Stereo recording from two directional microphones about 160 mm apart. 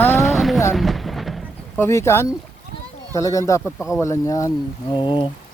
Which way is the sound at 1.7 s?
15° left (ahead or behind).